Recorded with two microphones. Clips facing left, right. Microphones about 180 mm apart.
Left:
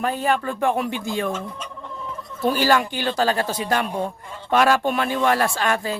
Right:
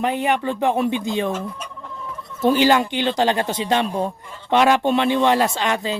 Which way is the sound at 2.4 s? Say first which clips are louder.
Right 3 dB; 20° right (ahead or behind).